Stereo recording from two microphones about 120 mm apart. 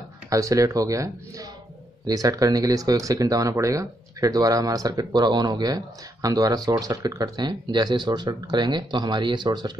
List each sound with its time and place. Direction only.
0.3 s speech: 25° right (ahead or behind)